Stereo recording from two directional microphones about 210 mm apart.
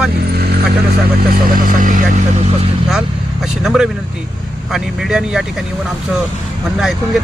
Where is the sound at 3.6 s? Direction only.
5° right (ahead or behind).